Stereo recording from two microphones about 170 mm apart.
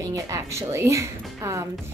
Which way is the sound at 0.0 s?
20° right (ahead or behind).